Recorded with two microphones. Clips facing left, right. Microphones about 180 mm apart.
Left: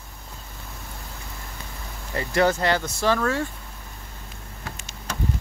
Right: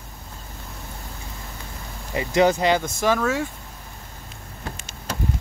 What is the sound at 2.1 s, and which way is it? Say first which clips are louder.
Speech: right 3 dB; 15° right (ahead or behind).